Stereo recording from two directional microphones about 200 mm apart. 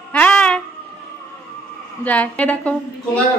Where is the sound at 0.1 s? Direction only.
5° left (ahead or behind).